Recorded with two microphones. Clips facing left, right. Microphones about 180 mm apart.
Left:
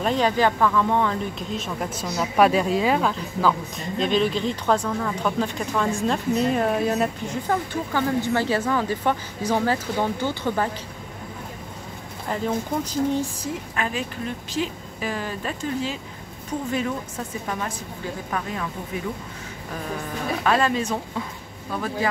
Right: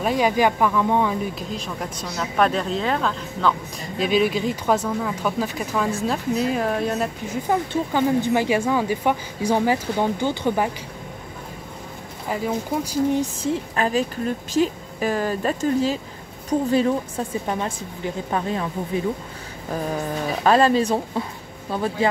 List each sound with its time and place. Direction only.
0.0 s speech: 10° right (ahead or behind)
1.5 s speech: centre (ahead or behind)
4.0 s speech: 10° right (ahead or behind)
7.4 s speech: 15° right (ahead or behind)
12.3 s speech: 10° right (ahead or behind)
13.4 s a woman's voice: 30° right (ahead or behind)
20.4 s a woman's voice: 35° right (ahead or behind)